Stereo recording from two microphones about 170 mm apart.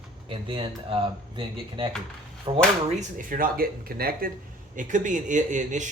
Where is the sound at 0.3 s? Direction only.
30° right (ahead or behind).